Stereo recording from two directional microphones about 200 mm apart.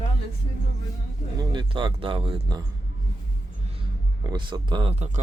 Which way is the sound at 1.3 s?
20° right (ahead or behind).